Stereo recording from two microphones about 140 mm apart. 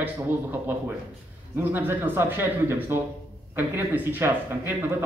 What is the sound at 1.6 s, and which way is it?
Speech, 15° right (ahead or behind).